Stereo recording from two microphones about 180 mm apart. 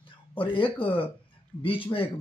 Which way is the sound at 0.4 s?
30° left (ahead or behind).